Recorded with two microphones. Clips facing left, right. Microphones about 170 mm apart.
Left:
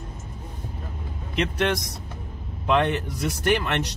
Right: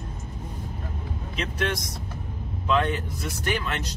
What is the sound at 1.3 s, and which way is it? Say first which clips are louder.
Speech: left 5 dB; 70° left (ahead or behind).